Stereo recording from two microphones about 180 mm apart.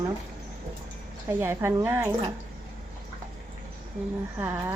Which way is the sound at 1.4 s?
15° right (ahead or behind).